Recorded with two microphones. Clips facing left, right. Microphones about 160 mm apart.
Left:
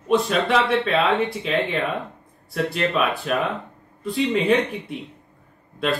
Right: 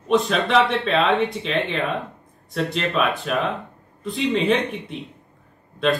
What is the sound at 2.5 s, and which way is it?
Speech, centre (ahead or behind).